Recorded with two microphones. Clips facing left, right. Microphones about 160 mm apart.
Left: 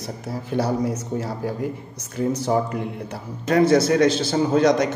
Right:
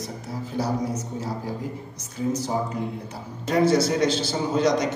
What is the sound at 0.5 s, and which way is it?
Speech, 70° left (ahead or behind).